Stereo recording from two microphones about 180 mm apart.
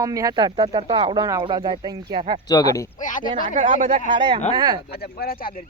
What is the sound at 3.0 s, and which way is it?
Speech, 45° left (ahead or behind).